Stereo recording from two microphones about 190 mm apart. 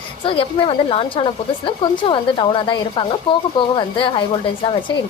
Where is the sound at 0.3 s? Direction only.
30° left (ahead or behind).